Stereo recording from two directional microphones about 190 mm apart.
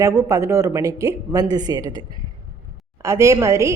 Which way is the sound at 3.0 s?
15° right (ahead or behind).